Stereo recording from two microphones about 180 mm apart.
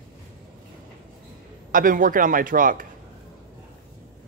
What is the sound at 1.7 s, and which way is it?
A man's voice, 50° right (ahead or behind).